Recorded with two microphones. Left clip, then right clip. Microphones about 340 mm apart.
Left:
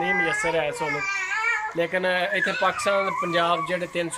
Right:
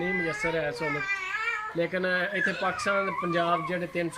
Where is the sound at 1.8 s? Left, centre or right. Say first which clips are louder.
Left 1 dB; centre.